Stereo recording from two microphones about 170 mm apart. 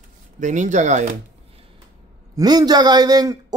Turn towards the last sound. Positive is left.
turn(degrees=-25)  # may be behind; listen again after turning